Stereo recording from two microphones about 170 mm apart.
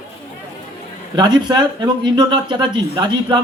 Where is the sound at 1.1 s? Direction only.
25° right (ahead or behind).